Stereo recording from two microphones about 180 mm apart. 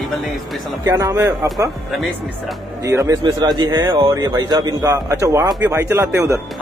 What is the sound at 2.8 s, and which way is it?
Speech, 20° right (ahead or behind).